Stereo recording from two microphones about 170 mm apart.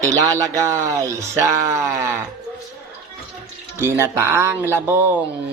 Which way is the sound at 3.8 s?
15° right (ahead or behind).